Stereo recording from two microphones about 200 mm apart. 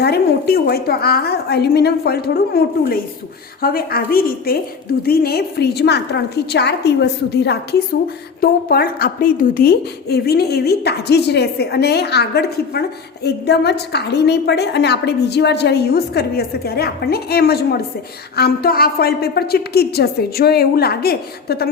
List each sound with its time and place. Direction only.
0.0 s a woman's voice: 50° left (ahead or behind)